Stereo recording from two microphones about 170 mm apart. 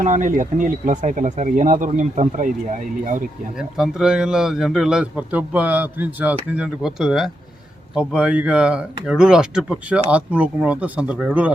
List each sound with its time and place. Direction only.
0.0 s speech: 50° right (ahead or behind)
3.6 s speech: 5° right (ahead or behind)